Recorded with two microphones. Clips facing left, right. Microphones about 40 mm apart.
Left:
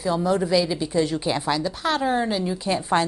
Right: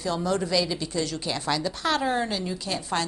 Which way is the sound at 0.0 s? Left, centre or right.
Centre.